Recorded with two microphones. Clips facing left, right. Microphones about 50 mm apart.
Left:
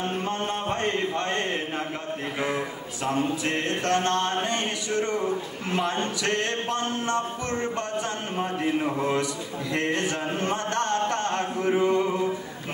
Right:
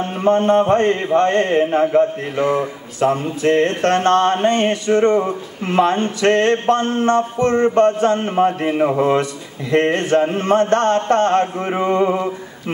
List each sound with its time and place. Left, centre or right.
0.2 s mantra: right
0.7 s a sound: right
2.5 s mantra: right